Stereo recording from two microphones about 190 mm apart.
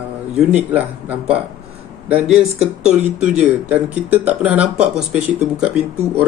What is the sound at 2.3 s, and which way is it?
Speech, 35° right (ahead or behind).